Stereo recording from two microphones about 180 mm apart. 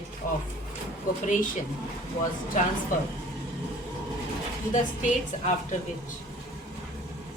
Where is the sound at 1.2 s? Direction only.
45° left (ahead or behind).